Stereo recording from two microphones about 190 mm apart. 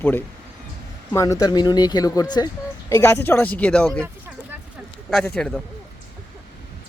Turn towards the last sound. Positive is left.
turn(degrees=5)  # may be behind; listen again after turning